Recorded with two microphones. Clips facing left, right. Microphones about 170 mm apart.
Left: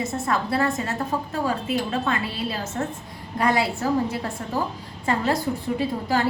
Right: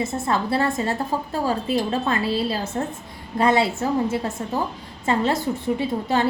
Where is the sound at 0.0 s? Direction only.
30° right (ahead or behind).